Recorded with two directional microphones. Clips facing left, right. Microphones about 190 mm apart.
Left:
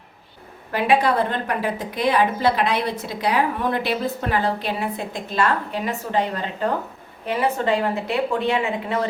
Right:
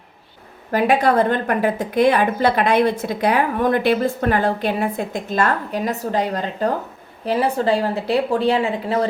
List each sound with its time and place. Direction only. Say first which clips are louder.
0.7 s a woman's voice: right 3 dB; 45° right (ahead or behind)